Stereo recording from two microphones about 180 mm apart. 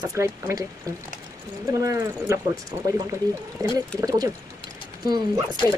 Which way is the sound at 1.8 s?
15° right (ahead or behind).